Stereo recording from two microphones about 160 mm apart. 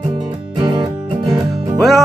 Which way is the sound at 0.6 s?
25° right (ahead or behind).